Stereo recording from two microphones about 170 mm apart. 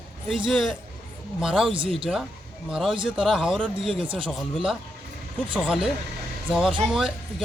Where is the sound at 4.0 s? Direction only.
30° right (ahead or behind).